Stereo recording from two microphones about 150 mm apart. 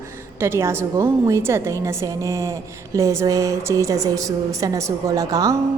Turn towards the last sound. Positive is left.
turn(degrees=-25)  # may be behind; listen again after turning